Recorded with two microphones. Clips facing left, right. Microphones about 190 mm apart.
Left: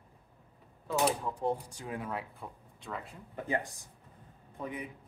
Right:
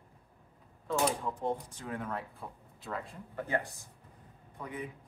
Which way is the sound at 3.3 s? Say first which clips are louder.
Even; 15° left (ahead or behind).